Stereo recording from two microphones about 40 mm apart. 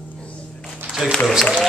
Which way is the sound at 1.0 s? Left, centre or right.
Centre.